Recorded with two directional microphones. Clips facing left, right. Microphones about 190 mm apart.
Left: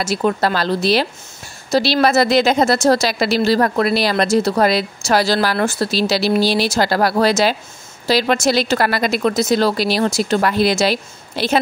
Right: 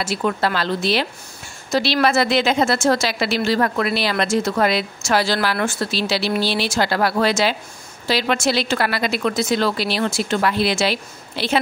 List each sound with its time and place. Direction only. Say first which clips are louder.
0.0 s a woman's voice: left 3 dB; 40° left (ahead or behind)